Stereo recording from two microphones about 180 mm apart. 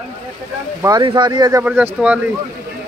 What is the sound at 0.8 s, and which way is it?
Speech, 20° right (ahead or behind).